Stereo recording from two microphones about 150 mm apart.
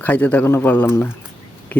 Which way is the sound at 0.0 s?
10° left (ahead or behind).